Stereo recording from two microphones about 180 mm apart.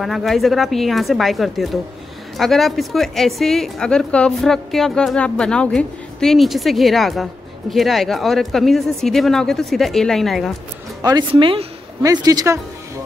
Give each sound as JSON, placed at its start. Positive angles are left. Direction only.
{"t": 0.0, "sound": "a woman's voice", "side_deg": 0}
{"t": 11.0, "sound": "speech", "side_deg": -20}